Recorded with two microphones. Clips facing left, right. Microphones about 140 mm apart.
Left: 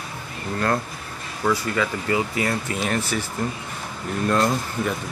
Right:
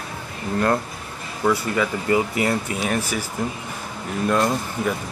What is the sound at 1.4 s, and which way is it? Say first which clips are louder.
Speech: right 2 dB; 10° right (ahead or behind).